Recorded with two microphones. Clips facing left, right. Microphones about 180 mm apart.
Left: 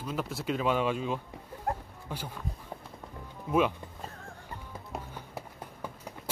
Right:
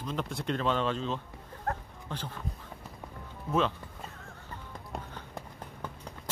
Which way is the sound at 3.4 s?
10° left (ahead or behind).